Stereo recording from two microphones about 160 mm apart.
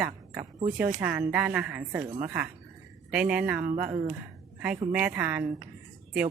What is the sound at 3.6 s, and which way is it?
Speech, 55° right (ahead or behind).